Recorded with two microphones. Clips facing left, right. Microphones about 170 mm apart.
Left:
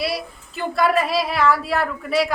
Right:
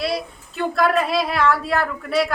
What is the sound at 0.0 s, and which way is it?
A woman's voice, 5° left (ahead or behind).